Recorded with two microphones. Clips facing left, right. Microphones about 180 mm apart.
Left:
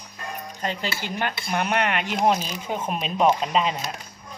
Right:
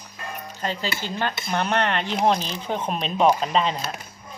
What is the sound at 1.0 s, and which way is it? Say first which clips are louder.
Speech: right 1 dB; 15° left (ahead or behind).